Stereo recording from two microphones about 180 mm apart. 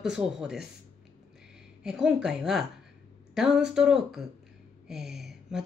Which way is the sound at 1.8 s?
5° right (ahead or behind).